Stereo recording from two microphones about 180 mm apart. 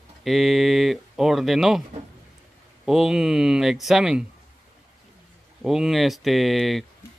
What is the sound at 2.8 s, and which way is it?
Speech, 5° right (ahead or behind).